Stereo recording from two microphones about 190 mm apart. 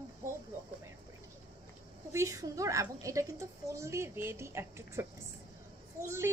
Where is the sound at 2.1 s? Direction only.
15° right (ahead or behind).